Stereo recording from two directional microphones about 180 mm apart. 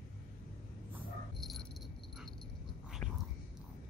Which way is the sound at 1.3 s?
Centre (ahead or behind).